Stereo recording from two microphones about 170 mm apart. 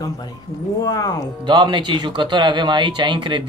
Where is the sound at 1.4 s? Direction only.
30° right (ahead or behind).